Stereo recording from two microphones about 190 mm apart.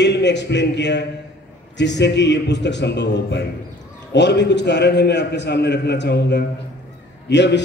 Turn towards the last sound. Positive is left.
turn(degrees=65)  # may be behind; listen again after turning